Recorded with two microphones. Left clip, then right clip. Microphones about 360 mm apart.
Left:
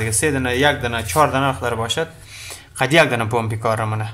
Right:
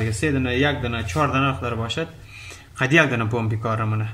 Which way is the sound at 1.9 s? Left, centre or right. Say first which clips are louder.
Left 5 dB; centre.